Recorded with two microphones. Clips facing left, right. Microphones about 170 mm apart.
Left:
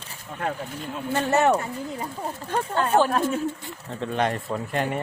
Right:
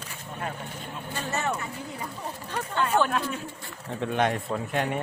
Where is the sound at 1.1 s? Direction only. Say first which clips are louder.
Left 10 dB; 65° left (ahead or behind).